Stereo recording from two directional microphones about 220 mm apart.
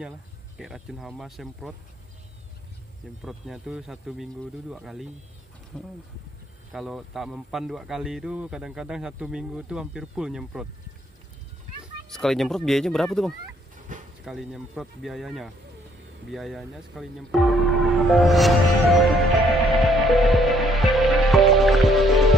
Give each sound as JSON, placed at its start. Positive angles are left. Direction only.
{"t": 0.6, "sound": "speech", "side_deg": 0}
{"t": 3.2, "sound": "speech", "side_deg": 0}
{"t": 12.1, "sound": "speech", "side_deg": 0}
{"t": 13.9, "sound": "a sound", "side_deg": -35}
{"t": 14.2, "sound": "speech", "side_deg": 0}
{"t": 16.3, "sound": "music", "side_deg": 0}